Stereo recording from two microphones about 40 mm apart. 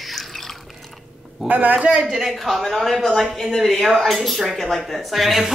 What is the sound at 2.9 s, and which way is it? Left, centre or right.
Speech, centre.